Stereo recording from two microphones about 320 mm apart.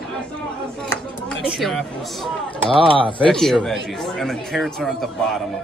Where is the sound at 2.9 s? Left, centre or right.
Centre.